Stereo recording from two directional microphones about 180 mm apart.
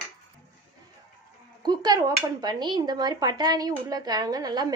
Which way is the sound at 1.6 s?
25° right (ahead or behind).